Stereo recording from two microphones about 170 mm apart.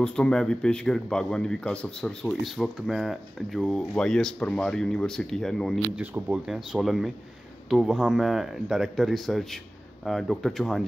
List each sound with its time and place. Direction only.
0.0 s speech: 5° left (ahead or behind)
5.9 s speech: 10° right (ahead or behind)